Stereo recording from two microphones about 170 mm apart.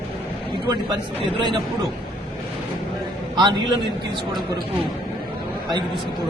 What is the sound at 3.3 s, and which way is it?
Speech, 25° right (ahead or behind).